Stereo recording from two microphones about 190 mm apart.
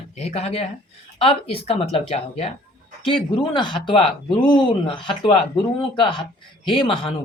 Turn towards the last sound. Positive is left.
turn(degrees=25)  # may be behind; listen again after turning